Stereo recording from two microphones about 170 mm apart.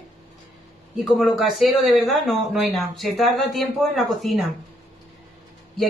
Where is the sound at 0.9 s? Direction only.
Centre (ahead or behind).